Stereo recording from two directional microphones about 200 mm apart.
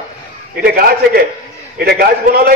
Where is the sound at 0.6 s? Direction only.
50° right (ahead or behind).